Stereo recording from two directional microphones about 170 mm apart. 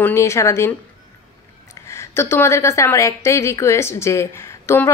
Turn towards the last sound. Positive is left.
turn(degrees=15)  # may be behind; listen again after turning